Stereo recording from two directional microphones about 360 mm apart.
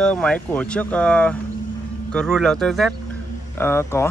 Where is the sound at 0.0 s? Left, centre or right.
Centre.